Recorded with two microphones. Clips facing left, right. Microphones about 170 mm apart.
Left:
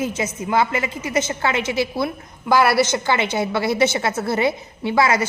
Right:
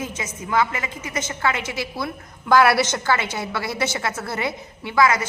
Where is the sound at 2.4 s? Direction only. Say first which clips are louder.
Even; 5° left (ahead or behind).